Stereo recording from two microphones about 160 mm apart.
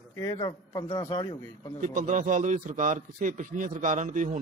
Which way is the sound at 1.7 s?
55° right (ahead or behind).